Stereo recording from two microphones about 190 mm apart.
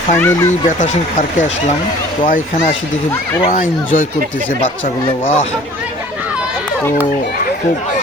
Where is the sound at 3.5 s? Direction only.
45° left (ahead or behind).